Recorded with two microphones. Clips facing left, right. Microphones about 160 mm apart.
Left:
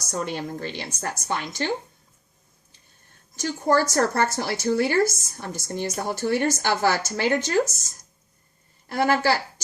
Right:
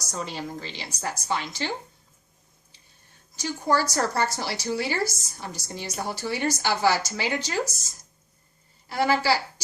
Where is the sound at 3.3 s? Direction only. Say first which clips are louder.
Left 3 dB; 50° left (ahead or behind).